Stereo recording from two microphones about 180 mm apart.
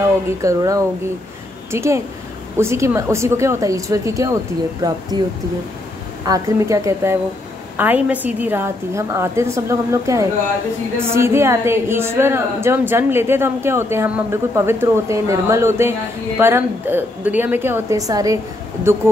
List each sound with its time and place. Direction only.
0.4 s a woman's voice: 20° right (ahead or behind)
6.2 s a woman's voice: 20° right (ahead or behind)